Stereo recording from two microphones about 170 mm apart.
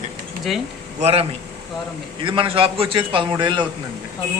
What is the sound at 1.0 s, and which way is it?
A man's voice, 35° right (ahead or behind).